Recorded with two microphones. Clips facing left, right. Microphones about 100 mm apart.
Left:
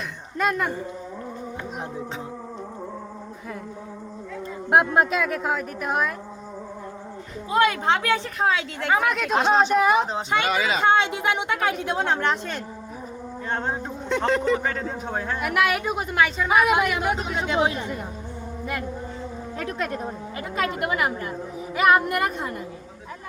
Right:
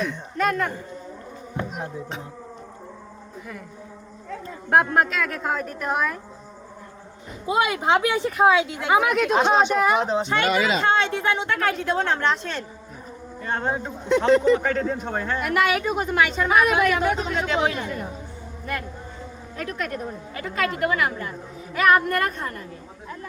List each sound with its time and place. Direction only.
0.3 s a woman's voice: 10° left (ahead or behind)
4.7 s a woman's voice: 15° left (ahead or behind)
7.4 s a man's voice: 15° right (ahead or behind); by 10.3 s centre (ahead or behind)
10.8 s a woman's voice: 15° left (ahead or behind)
19.5 s a woman's voice: 25° left (ahead or behind)